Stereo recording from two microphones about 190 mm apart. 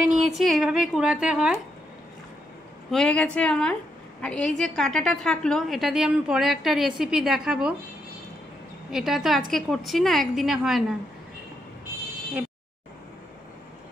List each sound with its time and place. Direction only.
0.1 s a woman's voice: centre (ahead or behind)
2.9 s a woman's voice: 5° left (ahead or behind)
8.9 s a woman's voice: centre (ahead or behind)